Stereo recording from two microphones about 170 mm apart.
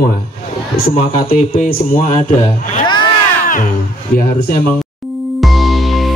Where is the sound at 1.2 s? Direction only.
35° left (ahead or behind).